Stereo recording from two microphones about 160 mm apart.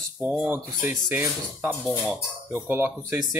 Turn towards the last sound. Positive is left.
turn(degrees=-15)  # may be behind; listen again after turning